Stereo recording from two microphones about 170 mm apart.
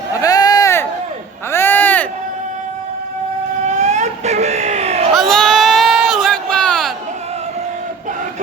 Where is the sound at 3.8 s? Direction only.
40° right (ahead or behind).